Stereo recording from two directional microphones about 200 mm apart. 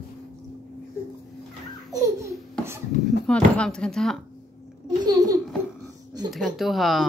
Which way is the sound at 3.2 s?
5° left (ahead or behind).